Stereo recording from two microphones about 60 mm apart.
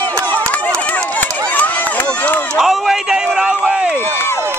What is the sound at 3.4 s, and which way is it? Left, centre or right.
Run, centre.